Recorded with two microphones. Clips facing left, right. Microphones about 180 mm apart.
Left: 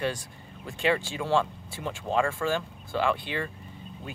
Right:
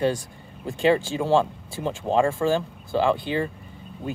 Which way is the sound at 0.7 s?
30° right (ahead or behind).